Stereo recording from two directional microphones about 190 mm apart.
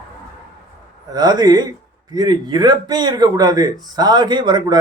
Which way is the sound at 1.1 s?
20° right (ahead or behind).